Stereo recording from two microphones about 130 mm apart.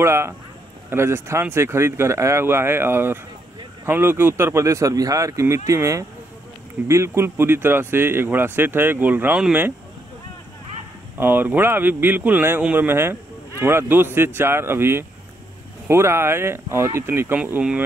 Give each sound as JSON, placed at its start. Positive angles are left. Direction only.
{"t": 0.0, "sound": "speech", "side_deg": -20}
{"t": 11.1, "sound": "speech", "side_deg": -15}